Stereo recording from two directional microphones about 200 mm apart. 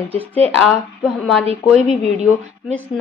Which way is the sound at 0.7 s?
Centre (ahead or behind).